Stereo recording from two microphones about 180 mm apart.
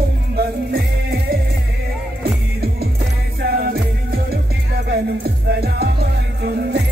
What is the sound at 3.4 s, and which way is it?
Music, 55° right (ahead or behind).